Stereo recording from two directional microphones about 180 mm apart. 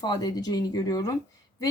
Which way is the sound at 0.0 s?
20° left (ahead or behind).